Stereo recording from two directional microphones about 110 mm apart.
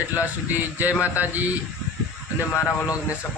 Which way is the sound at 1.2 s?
15° right (ahead or behind).